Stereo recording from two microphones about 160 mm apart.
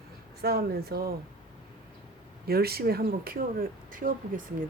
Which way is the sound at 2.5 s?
75° right (ahead or behind).